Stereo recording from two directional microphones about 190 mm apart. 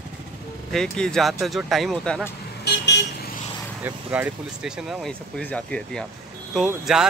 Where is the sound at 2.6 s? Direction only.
65° left (ahead or behind).